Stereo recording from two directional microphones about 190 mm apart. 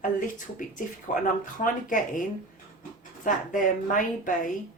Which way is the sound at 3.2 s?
45° left (ahead or behind).